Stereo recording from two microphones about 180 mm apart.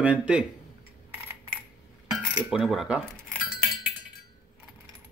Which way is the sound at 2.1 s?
5° right (ahead or behind).